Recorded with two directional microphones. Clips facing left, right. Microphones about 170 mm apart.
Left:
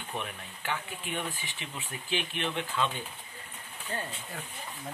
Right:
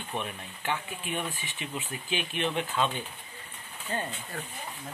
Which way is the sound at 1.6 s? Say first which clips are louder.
Right 8 dB; 15° right (ahead or behind).